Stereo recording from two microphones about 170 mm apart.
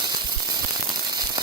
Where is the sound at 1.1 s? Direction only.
25° right (ahead or behind).